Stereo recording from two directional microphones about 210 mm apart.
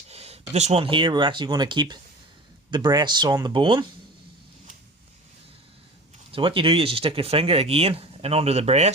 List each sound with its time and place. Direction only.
0.1 s a sound: 30° right (ahead or behind)
0.5 s speech: 30° right (ahead or behind)
6.3 s speech: 25° right (ahead or behind)